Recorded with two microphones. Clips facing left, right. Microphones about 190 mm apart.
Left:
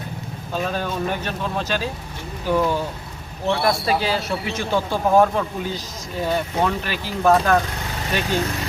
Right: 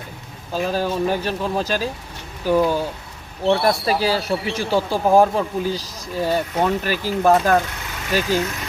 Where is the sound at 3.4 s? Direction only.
35° right (ahead or behind).